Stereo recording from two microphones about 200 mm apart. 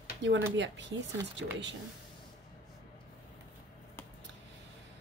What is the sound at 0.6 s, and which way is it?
Speech, 65° right (ahead or behind).